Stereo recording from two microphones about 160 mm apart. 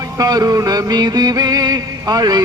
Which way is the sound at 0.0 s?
25° right (ahead or behind).